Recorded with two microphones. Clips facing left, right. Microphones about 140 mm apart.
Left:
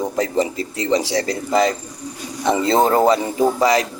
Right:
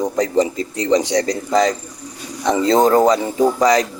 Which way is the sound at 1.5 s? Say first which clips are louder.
Even; 10° left (ahead or behind).